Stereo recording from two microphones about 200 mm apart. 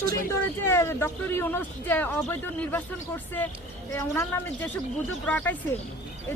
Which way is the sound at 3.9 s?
15° left (ahead or behind).